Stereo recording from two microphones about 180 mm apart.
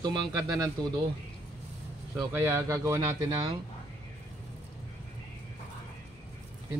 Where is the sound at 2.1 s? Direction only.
15° right (ahead or behind).